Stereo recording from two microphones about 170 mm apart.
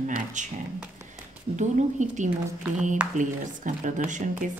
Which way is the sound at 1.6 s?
45° right (ahead or behind).